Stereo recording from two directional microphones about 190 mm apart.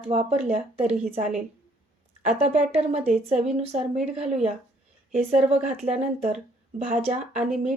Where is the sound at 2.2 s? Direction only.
40° right (ahead or behind).